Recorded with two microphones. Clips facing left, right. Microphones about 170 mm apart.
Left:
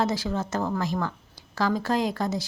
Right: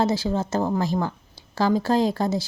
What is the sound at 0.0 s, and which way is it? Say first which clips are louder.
Speech: right 4 dB; 30° right (ahead or behind).